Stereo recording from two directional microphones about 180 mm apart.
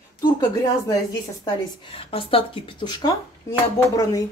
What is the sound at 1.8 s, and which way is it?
Speech, 30° left (ahead or behind).